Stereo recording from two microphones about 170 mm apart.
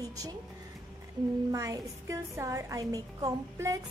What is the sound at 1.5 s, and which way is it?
A woman's voice, 20° right (ahead or behind).